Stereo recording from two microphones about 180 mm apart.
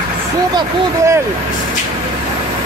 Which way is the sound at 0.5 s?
15° right (ahead or behind).